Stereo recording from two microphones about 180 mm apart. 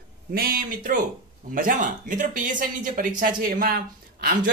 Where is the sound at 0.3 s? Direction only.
55° right (ahead or behind).